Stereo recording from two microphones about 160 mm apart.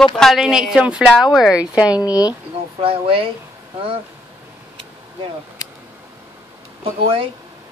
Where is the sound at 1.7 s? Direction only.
25° left (ahead or behind).